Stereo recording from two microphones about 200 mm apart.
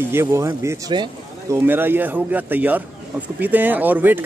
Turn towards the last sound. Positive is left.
turn(degrees=-10)  # may be behind; listen again after turning